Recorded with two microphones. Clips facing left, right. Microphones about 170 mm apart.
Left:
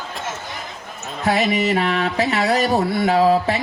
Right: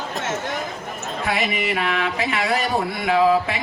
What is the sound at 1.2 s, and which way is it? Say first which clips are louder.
A man's voice: left 6 dB; 40° left (ahead or behind).